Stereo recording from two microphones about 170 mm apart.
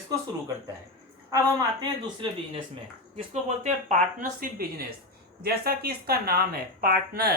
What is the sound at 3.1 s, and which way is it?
Speech, 40° right (ahead or behind).